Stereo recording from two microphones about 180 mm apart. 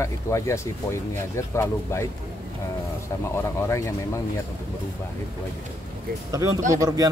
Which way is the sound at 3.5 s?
15° left (ahead or behind).